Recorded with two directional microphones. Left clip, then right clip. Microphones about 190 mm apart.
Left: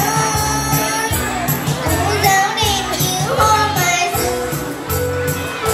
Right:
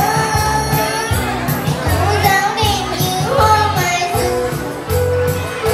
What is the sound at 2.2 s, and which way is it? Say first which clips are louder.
Music: left 1 dB; 50° left (ahead or behind).